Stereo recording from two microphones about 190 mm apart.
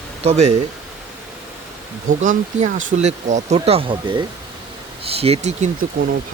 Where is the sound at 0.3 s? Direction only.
35° right (ahead or behind).